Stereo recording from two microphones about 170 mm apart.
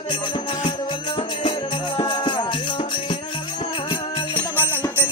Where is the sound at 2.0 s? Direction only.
30° left (ahead or behind).